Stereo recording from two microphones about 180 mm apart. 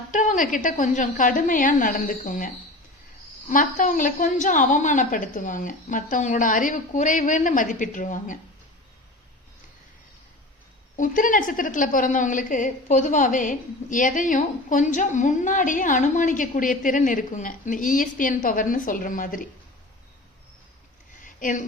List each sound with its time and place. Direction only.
0.1 s a woman's voice: 45° left (ahead or behind)
3.5 s a woman's voice: 45° left (ahead or behind)
10.9 s a woman's voice: 50° left (ahead or behind)
21.2 s a sound: 45° left (ahead or behind)